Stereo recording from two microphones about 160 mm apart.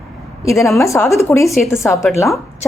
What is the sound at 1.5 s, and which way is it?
Speech, centre (ahead or behind).